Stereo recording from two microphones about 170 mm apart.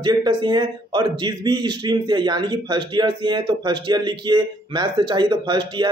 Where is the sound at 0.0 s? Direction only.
25° right (ahead or behind).